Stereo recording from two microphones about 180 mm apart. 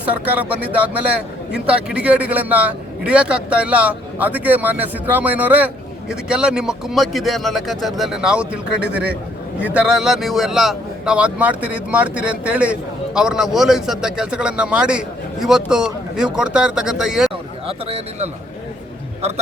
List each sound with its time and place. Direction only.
0.0 s a man's voice: 10° right (ahead or behind)
17.7 s speech: 35° right (ahead or behind)